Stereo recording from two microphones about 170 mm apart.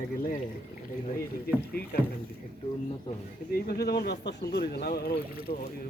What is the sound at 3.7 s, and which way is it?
Speech, 70° left (ahead or behind).